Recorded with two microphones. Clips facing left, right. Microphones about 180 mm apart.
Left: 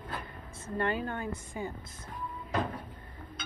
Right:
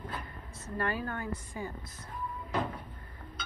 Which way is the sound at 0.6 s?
25° left (ahead or behind).